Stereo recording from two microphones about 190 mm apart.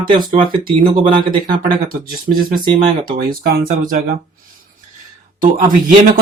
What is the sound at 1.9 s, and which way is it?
Speech, 50° right (ahead or behind).